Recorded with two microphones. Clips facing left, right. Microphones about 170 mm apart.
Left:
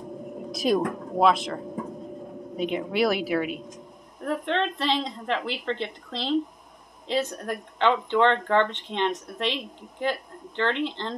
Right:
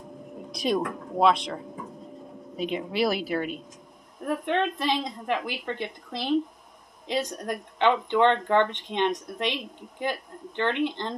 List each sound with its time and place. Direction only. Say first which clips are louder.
0.5 s speech: left 3 dB; centre (ahead or behind)
2.6 s speech: left 2 dB; centre (ahead or behind)
4.2 s speech: even; 15° right (ahead or behind)